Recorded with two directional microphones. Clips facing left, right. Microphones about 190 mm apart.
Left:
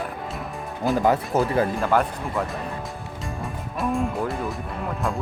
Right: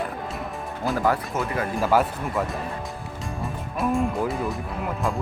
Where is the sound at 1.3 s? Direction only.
35° left (ahead or behind).